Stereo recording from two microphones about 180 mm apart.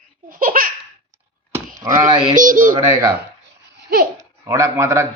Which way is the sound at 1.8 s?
25° right (ahead or behind).